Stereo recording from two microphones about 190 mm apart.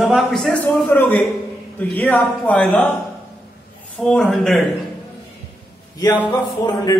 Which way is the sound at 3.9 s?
5° left (ahead or behind).